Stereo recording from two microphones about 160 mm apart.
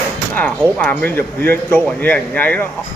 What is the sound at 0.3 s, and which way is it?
Speech, 5° left (ahead or behind).